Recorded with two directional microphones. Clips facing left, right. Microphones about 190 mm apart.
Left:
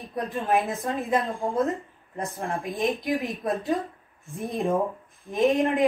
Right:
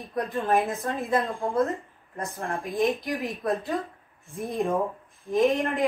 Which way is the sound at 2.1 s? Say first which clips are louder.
Left 1 dB; 15° left (ahead or behind).